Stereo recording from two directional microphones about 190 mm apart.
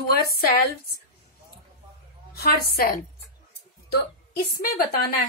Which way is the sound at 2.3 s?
55° left (ahead or behind).